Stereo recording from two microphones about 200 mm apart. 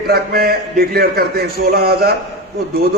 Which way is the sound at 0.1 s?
50° right (ahead or behind).